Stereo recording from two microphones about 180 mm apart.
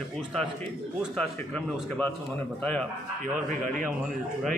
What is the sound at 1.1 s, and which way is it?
Speech, 5° left (ahead or behind).